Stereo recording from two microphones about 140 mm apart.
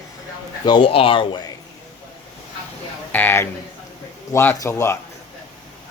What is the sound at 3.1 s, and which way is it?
A man's voice, 15° left (ahead or behind).